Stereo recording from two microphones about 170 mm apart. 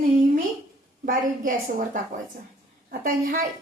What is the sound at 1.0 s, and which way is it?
Speech, 55° right (ahead or behind).